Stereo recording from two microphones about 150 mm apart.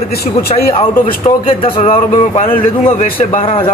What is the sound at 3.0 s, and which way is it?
Speech, 75° left (ahead or behind).